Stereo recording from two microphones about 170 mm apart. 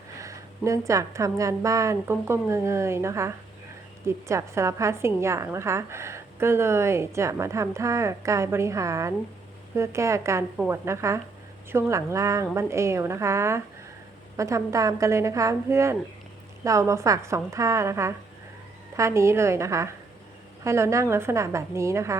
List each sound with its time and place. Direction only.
0.2 s a woman's voice: 20° right (ahead or behind)